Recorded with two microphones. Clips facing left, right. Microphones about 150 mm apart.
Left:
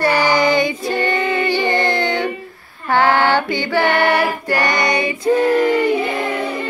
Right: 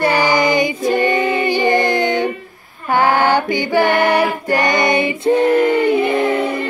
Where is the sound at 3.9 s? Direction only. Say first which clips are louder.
Right 2 dB; 20° right (ahead or behind).